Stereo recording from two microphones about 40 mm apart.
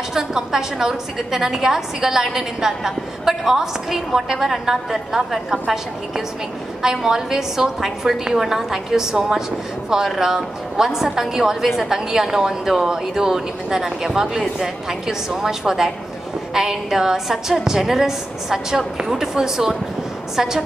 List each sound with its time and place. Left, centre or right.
0.1 s a woman's voice: centre